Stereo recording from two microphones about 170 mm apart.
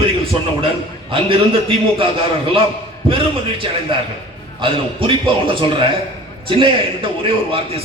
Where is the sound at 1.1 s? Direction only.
30° right (ahead or behind).